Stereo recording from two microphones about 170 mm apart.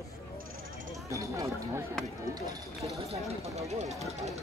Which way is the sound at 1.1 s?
20° right (ahead or behind).